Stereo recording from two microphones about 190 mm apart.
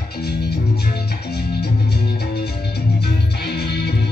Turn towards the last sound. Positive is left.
turn(degrees=60)  # may be behind; listen again after turning